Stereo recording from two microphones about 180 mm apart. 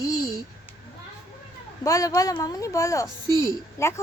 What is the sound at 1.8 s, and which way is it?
A woman's voice, 20° left (ahead or behind).